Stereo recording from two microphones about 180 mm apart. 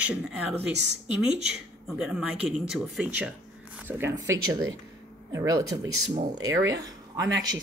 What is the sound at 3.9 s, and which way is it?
Speech, 15° right (ahead or behind).